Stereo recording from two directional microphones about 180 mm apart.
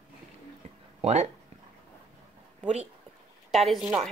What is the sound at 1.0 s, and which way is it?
Speech, 35° right (ahead or behind).